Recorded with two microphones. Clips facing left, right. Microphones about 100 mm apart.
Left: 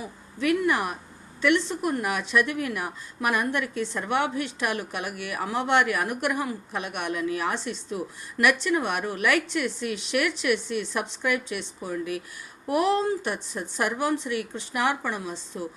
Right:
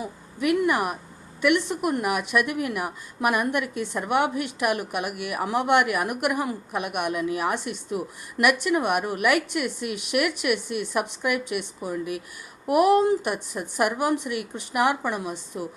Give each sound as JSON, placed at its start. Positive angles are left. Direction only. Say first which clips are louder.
{"t": 0.0, "sound": "a woman's voice", "louder": "right 1 dB", "side_deg": -15}